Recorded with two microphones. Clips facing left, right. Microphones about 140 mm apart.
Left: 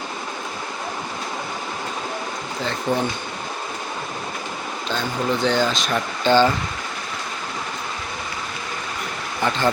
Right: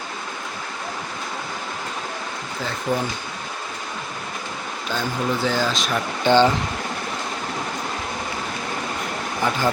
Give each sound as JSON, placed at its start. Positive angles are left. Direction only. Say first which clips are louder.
{"t": 2.9, "sound": "speech", "louder": "left 1 dB", "side_deg": 25}
{"t": 4.9, "sound": "speech", "louder": "left 1 dB", "side_deg": -10}
{"t": 6.2, "sound": "speech", "louder": "even", "side_deg": -15}